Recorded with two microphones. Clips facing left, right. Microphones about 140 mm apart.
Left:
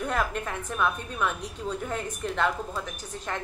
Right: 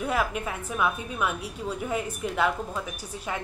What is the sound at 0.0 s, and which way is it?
A woman's voice, 5° right (ahead or behind).